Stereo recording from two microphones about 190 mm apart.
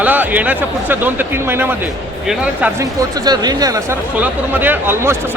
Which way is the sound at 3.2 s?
20° right (ahead or behind).